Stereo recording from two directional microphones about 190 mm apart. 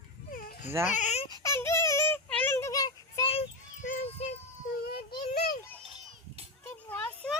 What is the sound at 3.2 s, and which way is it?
Children playing, 30° left (ahead or behind).